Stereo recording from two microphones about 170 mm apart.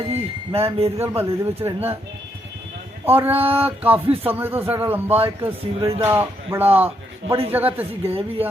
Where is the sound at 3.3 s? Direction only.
35° right (ahead or behind).